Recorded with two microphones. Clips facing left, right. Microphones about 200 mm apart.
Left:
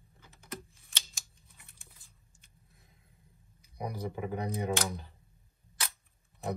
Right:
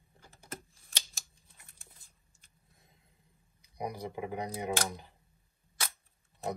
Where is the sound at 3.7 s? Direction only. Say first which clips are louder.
Even; 15° right (ahead or behind).